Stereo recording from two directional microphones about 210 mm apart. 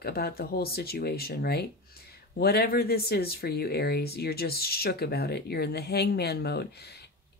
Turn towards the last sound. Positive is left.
turn(degrees=50)  # may be behind; listen again after turning